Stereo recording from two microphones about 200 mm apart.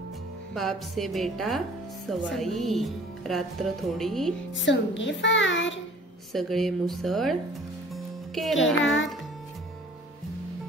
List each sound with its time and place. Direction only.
0.6 s speech: centre (ahead or behind)
4.6 s a child's voice: 65° left (ahead or behind)
6.3 s speech: centre (ahead or behind)
7.9 s music: centre (ahead or behind)